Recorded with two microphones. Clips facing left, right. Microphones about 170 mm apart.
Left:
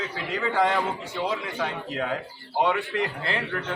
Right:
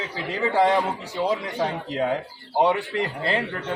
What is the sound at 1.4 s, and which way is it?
A man's voice, 35° right (ahead or behind).